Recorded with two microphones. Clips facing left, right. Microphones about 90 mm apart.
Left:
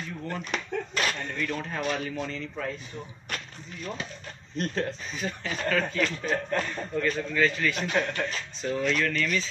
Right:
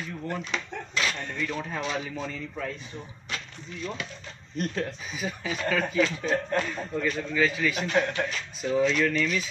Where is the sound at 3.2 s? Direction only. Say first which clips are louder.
Even; 50° left (ahead or behind).